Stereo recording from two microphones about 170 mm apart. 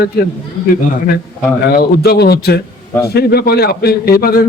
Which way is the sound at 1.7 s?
65° left (ahead or behind).